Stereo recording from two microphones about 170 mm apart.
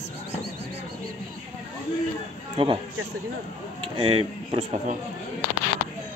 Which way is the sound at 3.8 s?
30° right (ahead or behind).